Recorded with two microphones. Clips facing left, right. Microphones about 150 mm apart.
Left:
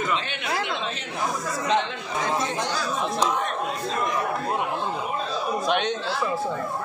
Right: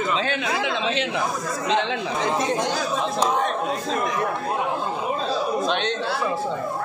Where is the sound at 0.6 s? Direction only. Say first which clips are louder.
Right 6 dB; 90° right.